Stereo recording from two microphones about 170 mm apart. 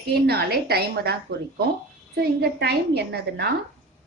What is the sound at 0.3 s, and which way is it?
A woman's voice, 70° right (ahead or behind).